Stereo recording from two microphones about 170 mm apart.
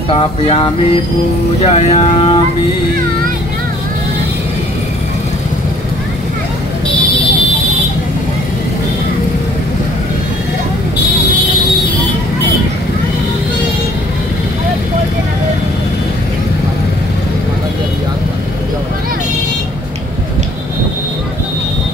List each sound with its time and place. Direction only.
0.1 s speech: 30° left (ahead or behind)